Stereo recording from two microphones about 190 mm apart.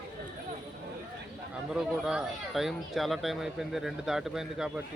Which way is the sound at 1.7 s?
5° right (ahead or behind).